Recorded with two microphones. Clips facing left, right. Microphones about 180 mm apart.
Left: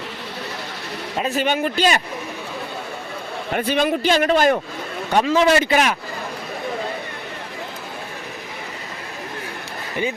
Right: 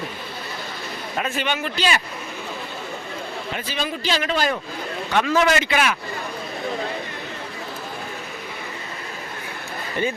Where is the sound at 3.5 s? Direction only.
55° left (ahead or behind).